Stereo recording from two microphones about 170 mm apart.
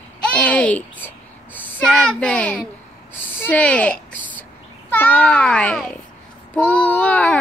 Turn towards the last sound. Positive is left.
turn(degrees=10)  # may be behind; listen again after turning